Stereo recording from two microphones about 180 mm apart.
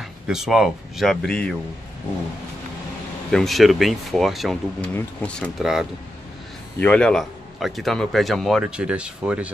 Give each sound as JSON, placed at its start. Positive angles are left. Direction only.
{"t": 0.3, "sound": "speech", "side_deg": -5}
{"t": 3.3, "sound": "speech", "side_deg": 0}